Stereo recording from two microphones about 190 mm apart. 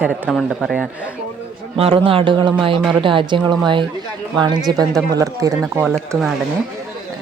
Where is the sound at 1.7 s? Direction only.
30° right (ahead or behind).